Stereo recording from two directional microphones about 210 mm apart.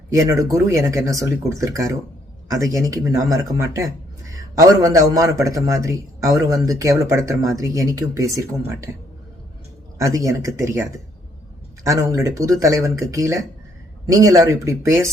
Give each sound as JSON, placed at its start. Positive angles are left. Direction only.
{"t": 0.1, "sound": "a man's voice", "side_deg": -15}
{"t": 10.0, "sound": "a man's voice", "side_deg": -15}